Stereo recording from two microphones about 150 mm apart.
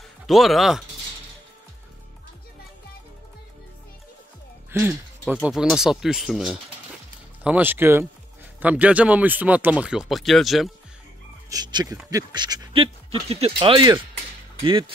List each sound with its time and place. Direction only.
0.3 s speech: centre (ahead or behind)
4.6 s speech: 15° right (ahead or behind)
5.4 s speech: 5° right (ahead or behind)
7.4 s speech: 10° right (ahead or behind)
11.4 s speech: 25° right (ahead or behind)